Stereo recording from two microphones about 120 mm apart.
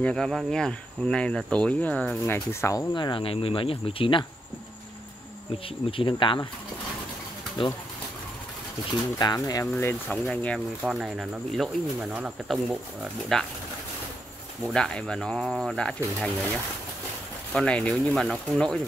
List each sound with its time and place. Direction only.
0.0 s speech: 5° left (ahead or behind)
2.2 s speech: 20° left (ahead or behind)
2.9 s speech: 40° left (ahead or behind)
5.9 s speech: 45° left (ahead or behind)
9.0 s speech: 35° left (ahead or behind)
10.0 s speech: 10° left (ahead or behind)
10.8 s speech: 5° right (ahead or behind)
14.6 s speech: 5° left (ahead or behind)
17.6 s speech: 10° left (ahead or behind)